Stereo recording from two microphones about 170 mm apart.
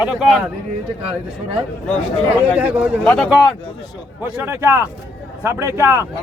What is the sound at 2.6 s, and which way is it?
Speech, 10° right (ahead or behind).